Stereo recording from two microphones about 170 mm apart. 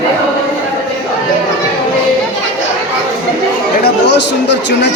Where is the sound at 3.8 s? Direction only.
90° left.